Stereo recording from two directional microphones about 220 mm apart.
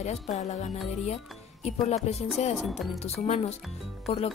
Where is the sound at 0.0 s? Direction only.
30° left (ahead or behind).